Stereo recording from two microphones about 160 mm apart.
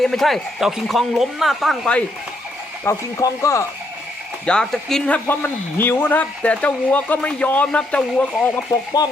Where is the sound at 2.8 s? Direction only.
20° left (ahead or behind).